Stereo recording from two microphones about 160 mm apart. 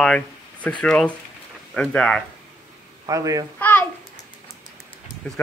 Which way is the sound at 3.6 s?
10° left (ahead or behind).